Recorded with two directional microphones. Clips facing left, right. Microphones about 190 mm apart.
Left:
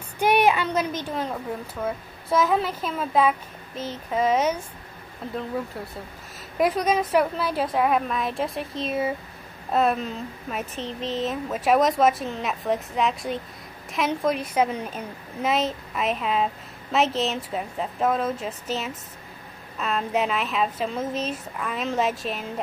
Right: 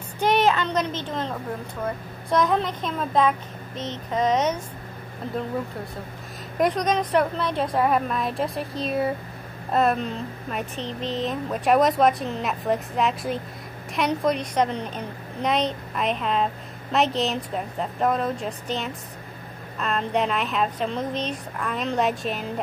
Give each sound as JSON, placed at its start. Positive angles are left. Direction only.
{"t": 0.2, "sound": "a woman's voice", "side_deg": 10}
{"t": 6.6, "sound": "speech", "side_deg": 5}